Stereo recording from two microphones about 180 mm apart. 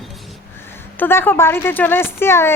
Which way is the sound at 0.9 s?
10° left (ahead or behind).